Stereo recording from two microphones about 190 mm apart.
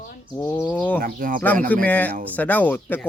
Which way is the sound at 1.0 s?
50° right (ahead or behind).